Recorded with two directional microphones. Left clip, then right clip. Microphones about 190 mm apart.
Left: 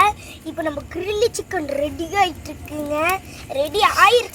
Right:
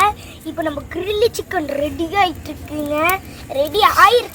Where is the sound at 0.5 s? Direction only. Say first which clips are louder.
Right 3 dB; 30° left (ahead or behind).